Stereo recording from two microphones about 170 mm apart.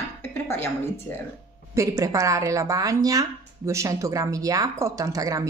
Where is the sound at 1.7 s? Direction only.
20° right (ahead or behind).